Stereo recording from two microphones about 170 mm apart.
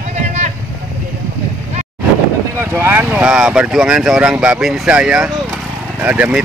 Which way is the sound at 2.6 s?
15° right (ahead or behind).